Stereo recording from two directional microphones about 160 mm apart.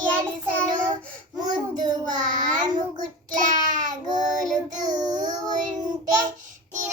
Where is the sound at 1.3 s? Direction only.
25° right (ahead or behind).